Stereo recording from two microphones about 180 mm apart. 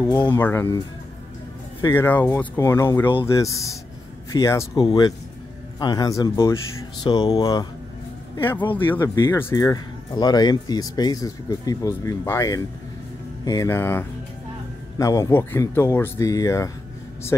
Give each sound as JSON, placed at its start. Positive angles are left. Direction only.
{"t": 0.0, "sound": "speech", "side_deg": 20}
{"t": 8.9, "sound": "speech", "side_deg": 15}